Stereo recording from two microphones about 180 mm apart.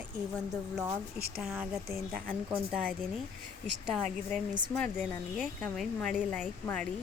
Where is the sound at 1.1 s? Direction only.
60° right (ahead or behind).